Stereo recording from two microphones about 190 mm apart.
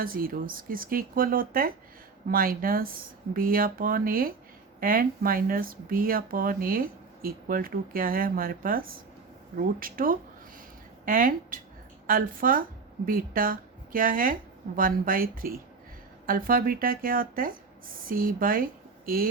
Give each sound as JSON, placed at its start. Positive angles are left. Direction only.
{"t": 0.0, "sound": "speech", "side_deg": -50}